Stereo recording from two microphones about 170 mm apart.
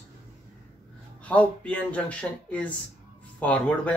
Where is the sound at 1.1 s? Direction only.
10° left (ahead or behind).